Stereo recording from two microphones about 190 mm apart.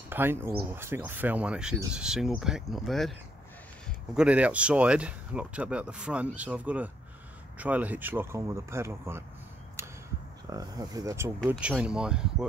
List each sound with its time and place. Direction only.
0.1 s speech: 10° right (ahead or behind)
10.5 s speech: 20° right (ahead or behind)